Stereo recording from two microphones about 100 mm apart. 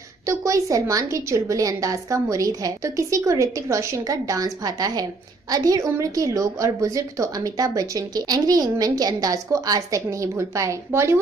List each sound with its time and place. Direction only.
0.3 s a woman's voice: 30° right (ahead or behind)